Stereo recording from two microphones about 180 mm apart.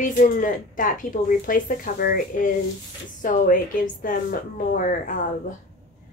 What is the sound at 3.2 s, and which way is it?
Speech, 50° left (ahead or behind).